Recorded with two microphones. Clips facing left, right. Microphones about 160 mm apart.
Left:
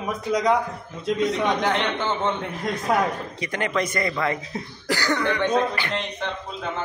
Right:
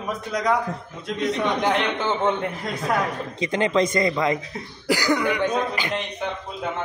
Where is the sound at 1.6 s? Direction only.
5° right (ahead or behind).